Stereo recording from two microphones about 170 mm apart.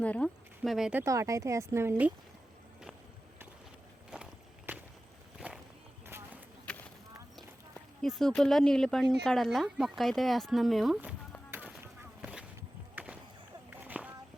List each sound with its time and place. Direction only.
0.0 s speech: 5° left (ahead or behind)
1.0 s speech: 20° right (ahead or behind)
4.1 s walk: 5° right (ahead or behind)
6.1 s a sound: 15° right (ahead or behind)
8.0 s speech: centre (ahead or behind)
12.2 s a sound: 5° right (ahead or behind)